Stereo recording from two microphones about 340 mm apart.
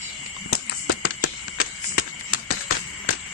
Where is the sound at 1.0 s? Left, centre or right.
Left.